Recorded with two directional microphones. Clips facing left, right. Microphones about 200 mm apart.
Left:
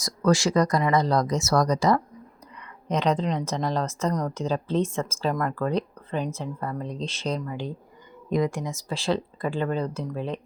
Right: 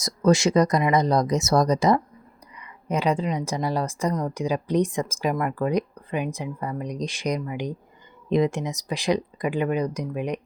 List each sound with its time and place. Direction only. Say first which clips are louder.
0.0 s speech: right 3 dB; 20° right (ahead or behind)
2.6 s speech: right 1 dB; 10° right (ahead or behind)